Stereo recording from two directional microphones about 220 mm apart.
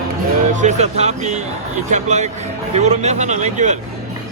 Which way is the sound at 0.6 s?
30° right (ahead or behind).